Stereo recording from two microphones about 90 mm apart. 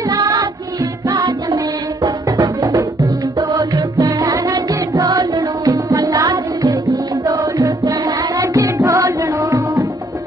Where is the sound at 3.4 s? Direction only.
45° right (ahead or behind).